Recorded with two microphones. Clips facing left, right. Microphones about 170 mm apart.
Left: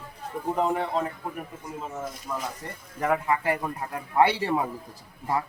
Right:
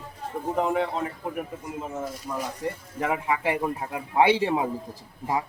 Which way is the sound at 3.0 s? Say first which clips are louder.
Left 1 dB; 15° right (ahead or behind).